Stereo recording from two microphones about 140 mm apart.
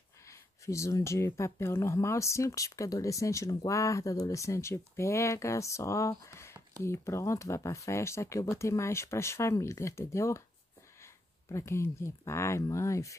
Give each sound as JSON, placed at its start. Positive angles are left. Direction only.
{"t": 0.3, "sound": "speech", "side_deg": 20}